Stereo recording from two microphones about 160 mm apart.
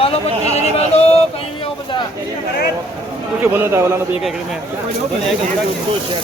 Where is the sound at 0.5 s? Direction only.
40° left (ahead or behind).